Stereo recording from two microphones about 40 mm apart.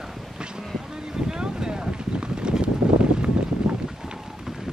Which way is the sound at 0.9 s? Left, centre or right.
Centre.